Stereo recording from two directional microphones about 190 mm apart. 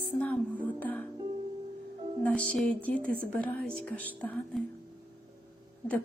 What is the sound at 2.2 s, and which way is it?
Speech, 5° left (ahead or behind).